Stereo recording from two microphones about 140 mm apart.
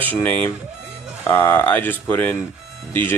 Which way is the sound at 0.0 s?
15° left (ahead or behind).